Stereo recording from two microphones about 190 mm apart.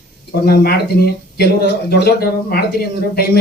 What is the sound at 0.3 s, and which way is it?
Speech, 55° left (ahead or behind).